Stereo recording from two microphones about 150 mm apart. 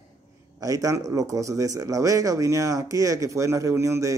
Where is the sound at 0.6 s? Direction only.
20° right (ahead or behind).